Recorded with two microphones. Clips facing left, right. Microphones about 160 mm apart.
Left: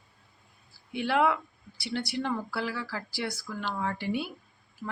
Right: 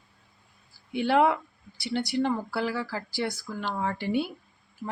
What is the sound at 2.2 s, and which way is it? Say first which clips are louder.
A woman's voice: right 4 dB; 45° right (ahead or behind).